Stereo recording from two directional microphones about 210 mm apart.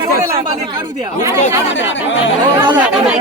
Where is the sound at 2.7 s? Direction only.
5° right (ahead or behind).